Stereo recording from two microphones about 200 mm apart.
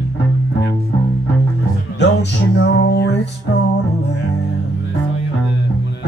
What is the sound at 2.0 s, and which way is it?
Music, 55° left (ahead or behind).